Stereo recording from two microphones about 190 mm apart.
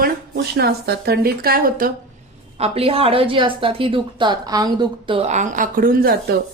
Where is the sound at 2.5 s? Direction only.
30° right (ahead or behind); by 6.1 s 50° right (ahead or behind).